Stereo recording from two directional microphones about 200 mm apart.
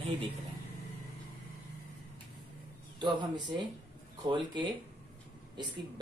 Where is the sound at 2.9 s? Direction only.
20° right (ahead or behind).